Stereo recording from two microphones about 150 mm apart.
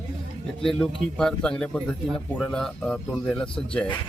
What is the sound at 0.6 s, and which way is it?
Speech, 5° left (ahead or behind).